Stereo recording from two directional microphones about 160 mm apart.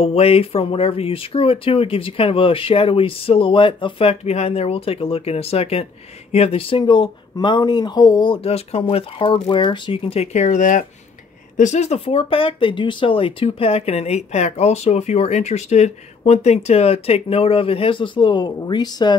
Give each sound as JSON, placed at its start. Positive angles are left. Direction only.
{"t": 0.0, "sound": "speech", "side_deg": 40}